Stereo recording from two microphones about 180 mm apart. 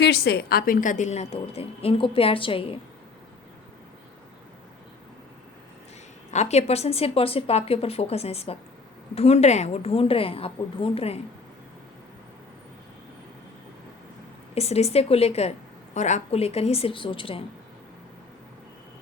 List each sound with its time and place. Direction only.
0.0 s a woman's voice: 65° left (ahead or behind); by 2.7 s 30° left (ahead or behind)
6.3 s a woman's voice: 40° left (ahead or behind)
14.5 s a woman's voice: 35° left (ahead or behind)